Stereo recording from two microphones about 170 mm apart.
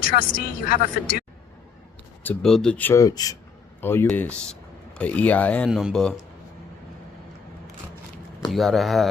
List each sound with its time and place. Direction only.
0.0 s a woman's voice: 55° left (ahead or behind)
2.2 s speech: 5° left (ahead or behind)
8.5 s speech: centre (ahead or behind)